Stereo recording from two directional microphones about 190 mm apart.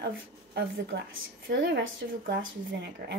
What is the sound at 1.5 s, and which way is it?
Speech, 70° right (ahead or behind).